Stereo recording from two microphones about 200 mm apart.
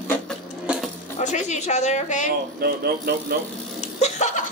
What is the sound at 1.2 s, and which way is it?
A woman's voice, 35° left (ahead or behind).